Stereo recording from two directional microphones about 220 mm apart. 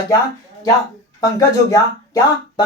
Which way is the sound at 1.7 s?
15° left (ahead or behind).